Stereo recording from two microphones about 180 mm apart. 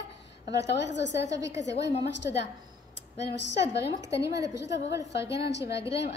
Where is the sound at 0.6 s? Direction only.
75° left (ahead or behind).